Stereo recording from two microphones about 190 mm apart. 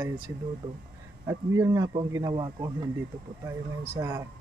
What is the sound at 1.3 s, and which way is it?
A man's voice, 15° right (ahead or behind).